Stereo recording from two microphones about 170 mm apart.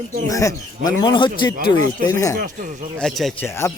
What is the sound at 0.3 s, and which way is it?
Speech, 20° left (ahead or behind).